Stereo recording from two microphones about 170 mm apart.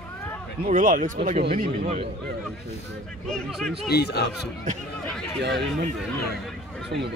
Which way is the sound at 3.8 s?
70° left (ahead or behind).